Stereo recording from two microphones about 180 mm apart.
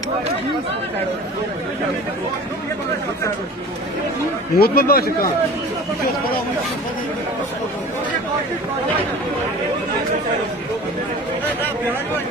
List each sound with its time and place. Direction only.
4.6 s speech: 55° left (ahead or behind)